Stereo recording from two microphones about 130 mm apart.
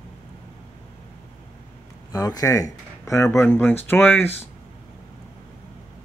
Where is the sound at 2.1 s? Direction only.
30° left (ahead or behind).